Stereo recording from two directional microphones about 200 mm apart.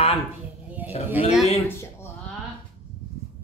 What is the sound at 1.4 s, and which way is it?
Speech, 30° left (ahead or behind).